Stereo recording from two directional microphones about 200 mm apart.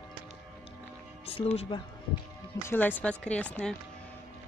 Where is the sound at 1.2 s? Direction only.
30° left (ahead or behind).